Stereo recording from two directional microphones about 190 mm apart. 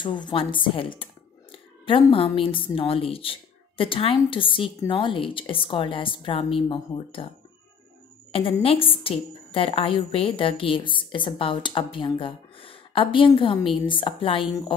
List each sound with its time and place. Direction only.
0.0 s a woman's voice: 25° left (ahead or behind)
8.3 s a woman's voice: 30° left (ahead or behind)